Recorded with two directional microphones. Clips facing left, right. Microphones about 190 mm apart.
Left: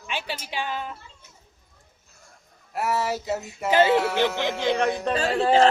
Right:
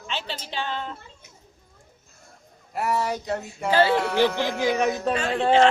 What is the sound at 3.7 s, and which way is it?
Speech, 20° left (ahead or behind).